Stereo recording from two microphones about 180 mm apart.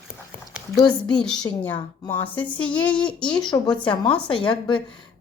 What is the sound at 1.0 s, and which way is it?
Speech, 5° left (ahead or behind).